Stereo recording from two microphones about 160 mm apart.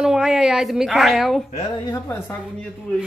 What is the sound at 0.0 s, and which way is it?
Speech, 5° right (ahead or behind).